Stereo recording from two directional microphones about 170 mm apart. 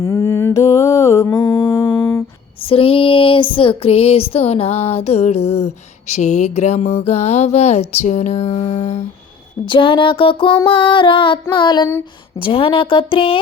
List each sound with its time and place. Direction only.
0.0 s mantra: 15° left (ahead or behind)
1.5 s music: 15° left (ahead or behind)
2.6 s female singing: 35° left (ahead or behind)
9.6 s female singing: 30° left (ahead or behind)